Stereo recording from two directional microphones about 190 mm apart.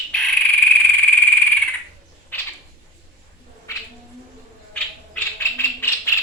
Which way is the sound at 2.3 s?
10° left (ahead or behind).